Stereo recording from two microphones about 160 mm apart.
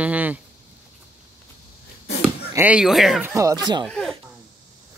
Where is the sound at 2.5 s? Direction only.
10° right (ahead or behind).